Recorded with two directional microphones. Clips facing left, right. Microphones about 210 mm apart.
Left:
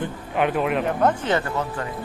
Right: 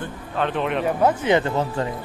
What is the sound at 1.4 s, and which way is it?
Speech, 25° right (ahead or behind).